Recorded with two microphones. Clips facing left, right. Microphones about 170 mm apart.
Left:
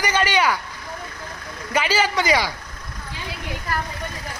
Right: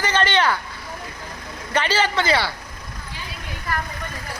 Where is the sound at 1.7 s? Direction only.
10° left (ahead or behind).